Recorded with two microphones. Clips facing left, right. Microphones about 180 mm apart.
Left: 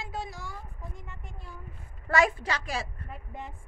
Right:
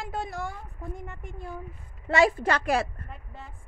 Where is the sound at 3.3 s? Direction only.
15° left (ahead or behind).